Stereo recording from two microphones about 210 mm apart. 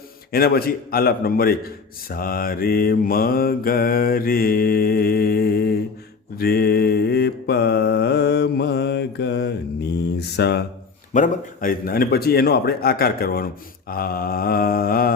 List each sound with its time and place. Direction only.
0.3 s a man's voice: 45° left (ahead or behind)
11.1 s a man's voice: 40° left (ahead or behind)
13.9 s groan: 45° left (ahead or behind)